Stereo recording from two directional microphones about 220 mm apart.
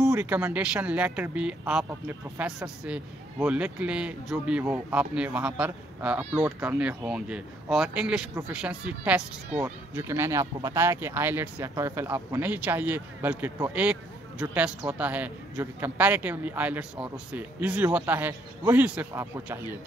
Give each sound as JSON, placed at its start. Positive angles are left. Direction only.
{"t": 0.0, "sound": "speech", "side_deg": -10}